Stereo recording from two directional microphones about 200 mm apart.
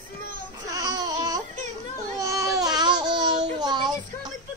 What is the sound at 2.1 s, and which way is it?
Baby cry, 15° right (ahead or behind).